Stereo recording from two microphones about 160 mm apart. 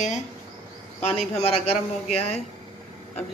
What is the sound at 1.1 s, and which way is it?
A man's voice, 40° left (ahead or behind).